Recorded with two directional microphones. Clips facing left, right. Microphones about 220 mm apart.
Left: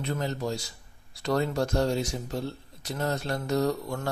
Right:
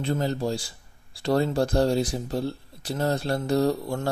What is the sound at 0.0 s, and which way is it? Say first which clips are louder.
A man's voice: right 4 dB; 30° right (ahead or behind).